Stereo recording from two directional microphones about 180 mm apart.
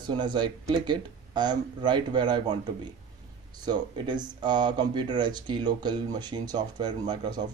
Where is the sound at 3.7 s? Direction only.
25° right (ahead or behind).